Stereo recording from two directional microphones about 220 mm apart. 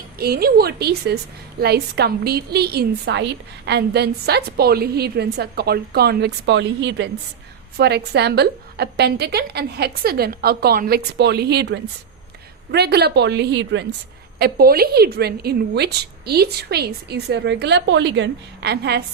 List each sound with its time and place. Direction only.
0.2 s a woman's voice: 45° right (ahead or behind)